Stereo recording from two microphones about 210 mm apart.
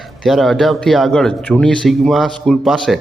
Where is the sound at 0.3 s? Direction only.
Centre (ahead or behind).